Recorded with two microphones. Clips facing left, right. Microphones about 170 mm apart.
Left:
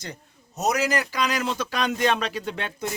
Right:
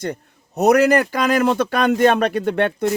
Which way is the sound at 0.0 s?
60° right (ahead or behind).